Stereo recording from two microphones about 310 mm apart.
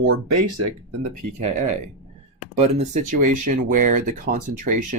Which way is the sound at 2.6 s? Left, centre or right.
Right.